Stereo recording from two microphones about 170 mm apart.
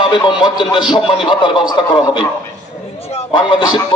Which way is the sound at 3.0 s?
30° left (ahead or behind).